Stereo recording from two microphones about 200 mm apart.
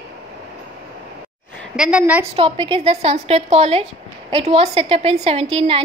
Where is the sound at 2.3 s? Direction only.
25° right (ahead or behind).